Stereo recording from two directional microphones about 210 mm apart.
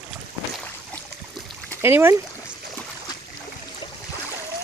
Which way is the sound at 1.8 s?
10° right (ahead or behind).